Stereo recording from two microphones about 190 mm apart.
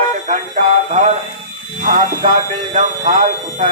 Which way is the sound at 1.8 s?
45° right (ahead or behind).